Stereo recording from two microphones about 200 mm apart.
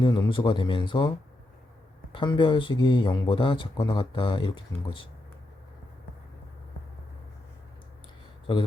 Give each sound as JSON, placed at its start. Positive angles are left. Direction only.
{"t": 0.0, "sound": "speech", "side_deg": 20}
{"t": 2.1, "sound": "speech", "side_deg": 25}